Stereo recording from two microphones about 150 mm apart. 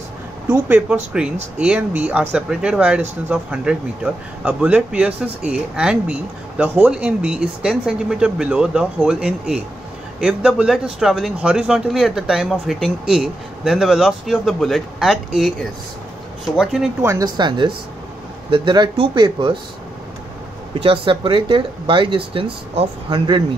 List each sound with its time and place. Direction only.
0.5 s speech: 10° right (ahead or behind)
17.0 s a woman's voice: 25° right (ahead or behind)
20.8 s speech: 35° right (ahead or behind)